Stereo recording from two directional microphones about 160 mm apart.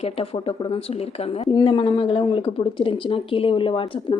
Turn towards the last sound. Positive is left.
turn(degrees=35)  # may be behind; listen again after turning